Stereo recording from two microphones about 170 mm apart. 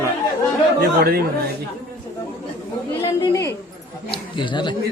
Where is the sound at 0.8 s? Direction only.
65° right (ahead or behind).